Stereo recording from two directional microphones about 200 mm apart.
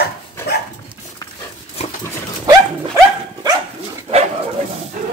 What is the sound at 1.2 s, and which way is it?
Dog, 20° left (ahead or behind).